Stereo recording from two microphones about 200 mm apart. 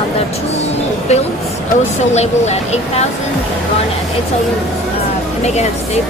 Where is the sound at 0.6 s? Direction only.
35° left (ahead or behind).